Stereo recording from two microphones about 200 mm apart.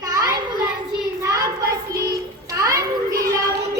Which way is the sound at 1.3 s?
15° right (ahead or behind).